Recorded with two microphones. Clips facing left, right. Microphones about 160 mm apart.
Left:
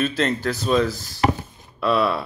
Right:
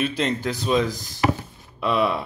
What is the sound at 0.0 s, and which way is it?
Speech, 15° right (ahead or behind).